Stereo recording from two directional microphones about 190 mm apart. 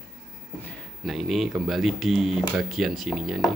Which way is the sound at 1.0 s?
Centre (ahead or behind).